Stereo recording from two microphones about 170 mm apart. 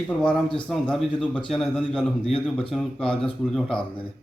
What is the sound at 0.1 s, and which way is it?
A man's voice, 5° left (ahead or behind).